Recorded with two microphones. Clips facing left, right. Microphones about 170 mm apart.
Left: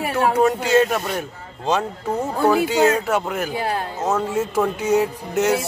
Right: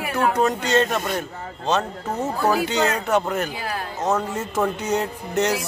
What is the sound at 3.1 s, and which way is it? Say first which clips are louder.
Speech: right 1 dB; 5° left (ahead or behind).